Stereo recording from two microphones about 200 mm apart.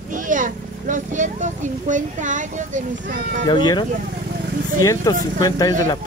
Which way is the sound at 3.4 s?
20° left (ahead or behind).